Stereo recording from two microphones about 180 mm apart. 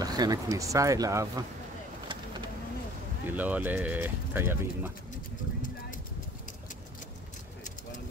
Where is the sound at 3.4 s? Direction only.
10° right (ahead or behind).